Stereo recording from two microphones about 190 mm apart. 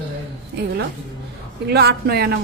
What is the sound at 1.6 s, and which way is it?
Speech, 60° right (ahead or behind).